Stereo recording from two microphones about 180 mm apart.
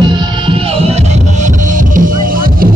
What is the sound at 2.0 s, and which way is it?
Music, 50° right (ahead or behind).